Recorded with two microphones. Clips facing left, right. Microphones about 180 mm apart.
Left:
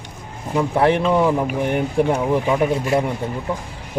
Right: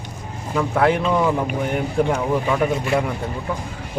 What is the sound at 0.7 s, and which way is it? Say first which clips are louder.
Speech: left 1 dB; 25° left (ahead or behind).